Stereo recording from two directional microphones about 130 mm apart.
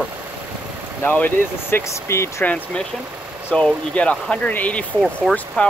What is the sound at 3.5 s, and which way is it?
Speech, 10° left (ahead or behind).